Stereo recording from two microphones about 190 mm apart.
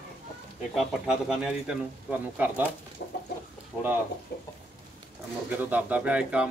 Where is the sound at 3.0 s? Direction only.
55° left (ahead or behind).